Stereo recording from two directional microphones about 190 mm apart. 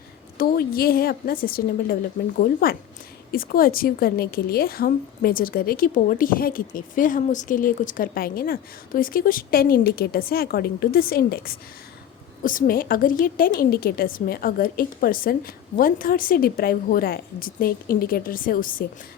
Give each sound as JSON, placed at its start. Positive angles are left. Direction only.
{"t": 0.3, "sound": "a woman's voice", "side_deg": 50}